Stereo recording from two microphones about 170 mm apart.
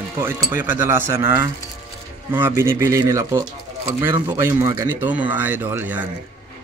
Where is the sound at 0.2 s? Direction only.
15° right (ahead or behind).